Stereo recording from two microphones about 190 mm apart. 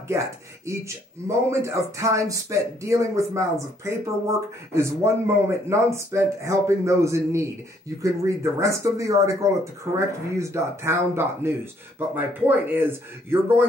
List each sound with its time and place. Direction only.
0.7 s speech: 15° right (ahead or behind)